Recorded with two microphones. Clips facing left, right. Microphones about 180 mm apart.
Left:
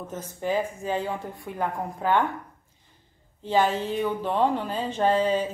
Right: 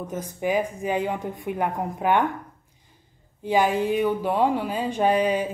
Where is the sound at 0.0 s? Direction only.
15° right (ahead or behind).